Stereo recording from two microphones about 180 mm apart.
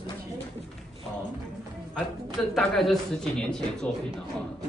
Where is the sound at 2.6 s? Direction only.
Centre (ahead or behind).